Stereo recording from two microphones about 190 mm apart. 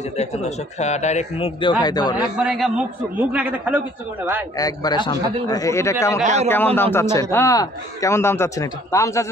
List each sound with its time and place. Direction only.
0.1 s a man's voice: 35° left (ahead or behind)
1.6 s a man's voice: 25° left (ahead or behind)
2.3 s a man's voice: 5° right (ahead or behind)
4.6 s a man's voice: 20° left (ahead or behind)
6.2 s a man's voice: 35° right (ahead or behind)
6.5 s a man's voice: 10° left (ahead or behind)